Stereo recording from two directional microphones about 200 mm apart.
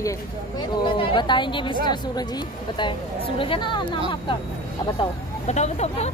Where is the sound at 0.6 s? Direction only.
25° left (ahead or behind).